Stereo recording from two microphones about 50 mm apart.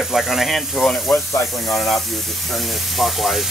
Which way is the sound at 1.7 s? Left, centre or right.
Centre.